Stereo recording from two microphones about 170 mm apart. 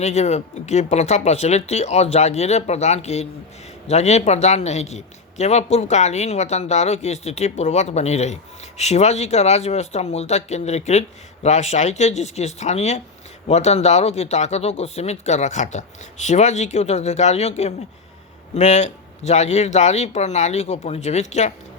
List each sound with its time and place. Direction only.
0.0 s speech: 40° left (ahead or behind)